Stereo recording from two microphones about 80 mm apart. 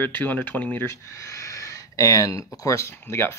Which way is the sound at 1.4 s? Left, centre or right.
Left.